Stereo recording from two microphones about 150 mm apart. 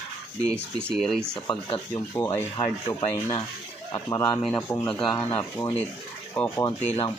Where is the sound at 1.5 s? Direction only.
35° left (ahead or behind).